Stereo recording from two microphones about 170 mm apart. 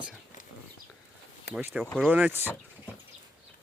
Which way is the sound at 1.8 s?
5° left (ahead or behind).